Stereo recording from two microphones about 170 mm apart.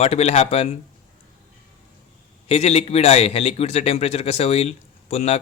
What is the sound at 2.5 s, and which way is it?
A man's voice, 35° left (ahead or behind).